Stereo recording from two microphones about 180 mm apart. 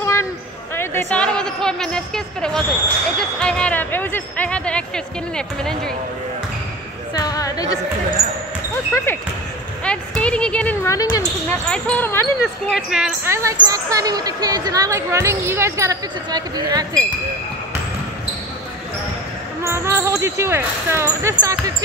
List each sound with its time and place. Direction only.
0.0 s a sound: 15° left (ahead or behind)
0.7 s speech: 10° left (ahead or behind)
7.2 s a sound: 20° left (ahead or behind)
8.9 s a woman's voice: 15° left (ahead or behind)
11.6 s a woman's voice: 5° left (ahead or behind)
12.7 s speech: centre (ahead or behind)
13.2 s speech: 15° right (ahead or behind)
19.6 s speech: 15° right (ahead or behind)